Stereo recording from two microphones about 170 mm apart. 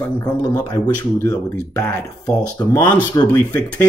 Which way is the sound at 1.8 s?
10° left (ahead or behind).